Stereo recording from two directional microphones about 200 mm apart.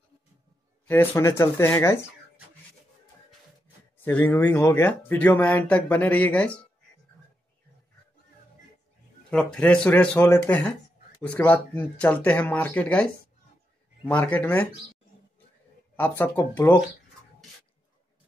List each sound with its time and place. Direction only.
0.8 s speech: 10° left (ahead or behind)
4.0 s speech: 10° left (ahead or behind)
9.3 s speech: 5° left (ahead or behind)
16.0 s speech: 10° left (ahead or behind)